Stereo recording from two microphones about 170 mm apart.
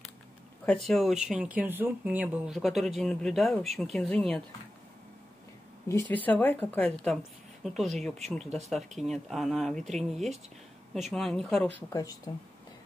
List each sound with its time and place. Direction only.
0.7 s speech: centre (ahead or behind)
5.9 s speech: 15° left (ahead or behind)
11.9 s speech: 20° left (ahead or behind)